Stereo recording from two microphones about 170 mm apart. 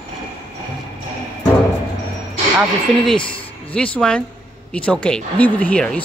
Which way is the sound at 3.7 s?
5° left (ahead or behind).